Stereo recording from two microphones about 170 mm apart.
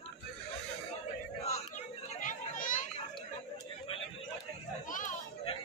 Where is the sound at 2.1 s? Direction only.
50° left (ahead or behind).